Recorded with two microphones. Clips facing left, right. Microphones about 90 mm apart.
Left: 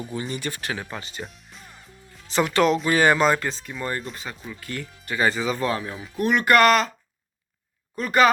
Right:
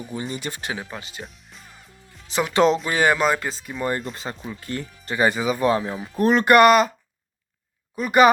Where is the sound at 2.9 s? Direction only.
10° right (ahead or behind).